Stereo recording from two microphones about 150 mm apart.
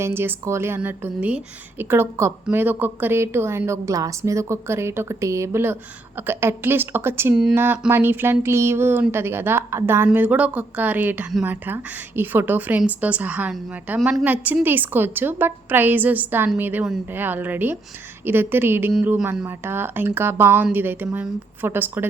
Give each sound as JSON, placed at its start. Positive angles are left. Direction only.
{"t": 0.0, "sound": "a woman's voice", "side_deg": -15}